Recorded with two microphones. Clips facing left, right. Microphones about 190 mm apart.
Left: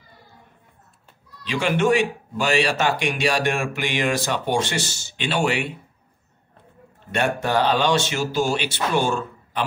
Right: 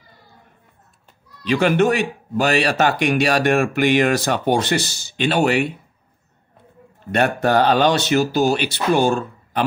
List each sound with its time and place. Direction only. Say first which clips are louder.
1.4 s speech: right 5 dB; 45° right (ahead or behind)
4.5 s speech: right 6 dB; 40° right (ahead or behind)
7.3 s speech: right 5 dB; 45° right (ahead or behind)